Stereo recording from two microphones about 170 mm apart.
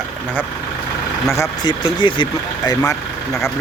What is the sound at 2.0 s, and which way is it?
Speech, 30° left (ahead or behind).